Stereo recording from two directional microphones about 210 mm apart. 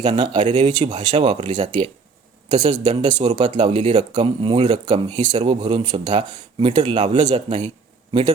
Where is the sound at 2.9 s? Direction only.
30° right (ahead or behind).